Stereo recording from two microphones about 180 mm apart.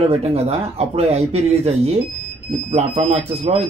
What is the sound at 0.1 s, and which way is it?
A man's voice, 35° right (ahead or behind).